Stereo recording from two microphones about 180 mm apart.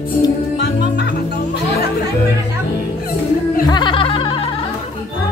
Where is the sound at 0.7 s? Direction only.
60° left (ahead or behind).